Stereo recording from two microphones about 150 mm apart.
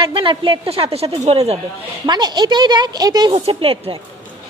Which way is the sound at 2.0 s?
30° right (ahead or behind).